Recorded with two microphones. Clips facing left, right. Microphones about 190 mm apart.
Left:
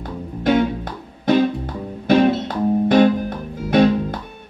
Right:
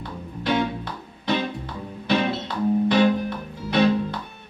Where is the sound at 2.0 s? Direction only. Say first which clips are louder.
Left 8 dB; 45° left (ahead or behind).